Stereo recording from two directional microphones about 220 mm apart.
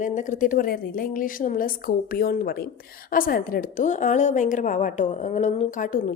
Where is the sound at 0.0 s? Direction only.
35° left (ahead or behind).